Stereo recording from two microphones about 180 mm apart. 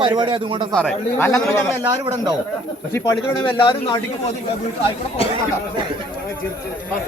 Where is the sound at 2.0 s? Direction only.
30° right (ahead or behind).